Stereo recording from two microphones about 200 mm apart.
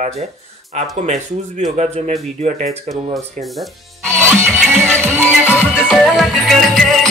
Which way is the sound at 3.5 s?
5° left (ahead or behind).